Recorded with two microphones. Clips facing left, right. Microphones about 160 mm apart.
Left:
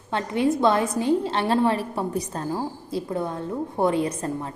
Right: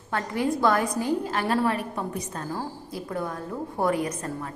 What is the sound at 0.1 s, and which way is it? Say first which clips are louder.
A woman's voice: left 4 dB; 20° left (ahead or behind).